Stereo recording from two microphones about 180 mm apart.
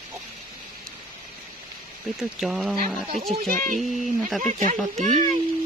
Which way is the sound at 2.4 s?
5° right (ahead or behind).